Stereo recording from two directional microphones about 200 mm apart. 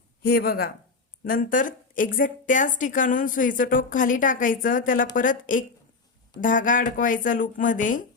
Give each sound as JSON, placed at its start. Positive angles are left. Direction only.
{"t": 0.2, "sound": "a woman's voice", "side_deg": 50}